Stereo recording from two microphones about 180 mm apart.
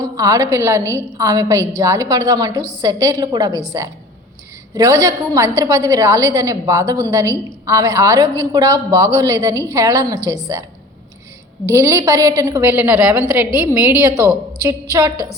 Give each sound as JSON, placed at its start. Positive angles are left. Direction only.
{"t": 0.0, "sound": "a woman's voice", "side_deg": -20}
{"t": 11.7, "sound": "a woman's voice", "side_deg": -15}